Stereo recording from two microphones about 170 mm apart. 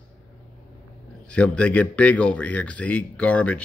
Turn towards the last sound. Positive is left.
turn(degrees=5)  # may be behind; listen again after turning